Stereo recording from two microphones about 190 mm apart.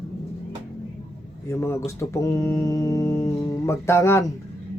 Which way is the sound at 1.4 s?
15° left (ahead or behind).